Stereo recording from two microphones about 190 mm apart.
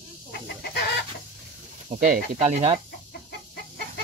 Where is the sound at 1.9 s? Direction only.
35° right (ahead or behind).